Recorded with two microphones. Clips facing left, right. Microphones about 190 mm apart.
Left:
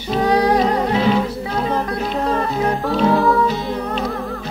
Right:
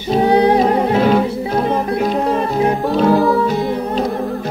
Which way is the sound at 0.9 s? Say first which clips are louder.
Right 4 dB; 50° right (ahead or behind).